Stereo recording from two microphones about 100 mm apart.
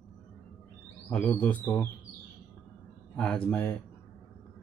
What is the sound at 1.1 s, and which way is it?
Speech, 15° left (ahead or behind).